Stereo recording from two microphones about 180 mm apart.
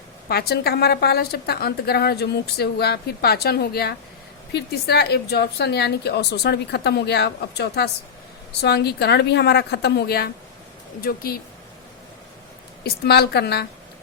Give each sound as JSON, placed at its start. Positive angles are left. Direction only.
{"t": 0.3, "sound": "a woman's voice", "side_deg": 60}
{"t": 12.8, "sound": "a woman's voice", "side_deg": 65}